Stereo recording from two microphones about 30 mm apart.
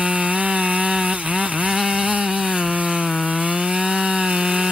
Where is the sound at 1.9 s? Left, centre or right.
Right.